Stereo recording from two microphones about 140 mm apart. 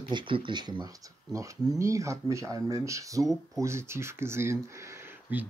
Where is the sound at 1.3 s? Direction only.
20° right (ahead or behind).